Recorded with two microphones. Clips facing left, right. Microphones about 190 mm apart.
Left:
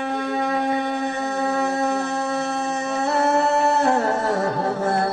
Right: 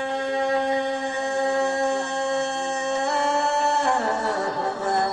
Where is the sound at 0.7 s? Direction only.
55° left (ahead or behind).